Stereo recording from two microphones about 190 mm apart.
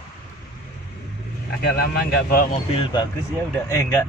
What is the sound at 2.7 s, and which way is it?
Speech, 25° left (ahead or behind).